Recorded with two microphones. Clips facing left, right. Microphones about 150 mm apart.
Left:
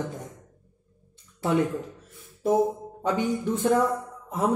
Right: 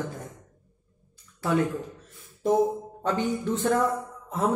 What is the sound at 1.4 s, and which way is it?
Speech, 25° left (ahead or behind).